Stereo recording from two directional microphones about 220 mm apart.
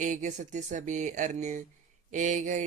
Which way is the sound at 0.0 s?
35° right (ahead or behind).